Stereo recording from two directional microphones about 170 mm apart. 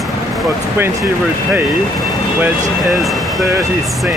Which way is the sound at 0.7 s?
15° right (ahead or behind).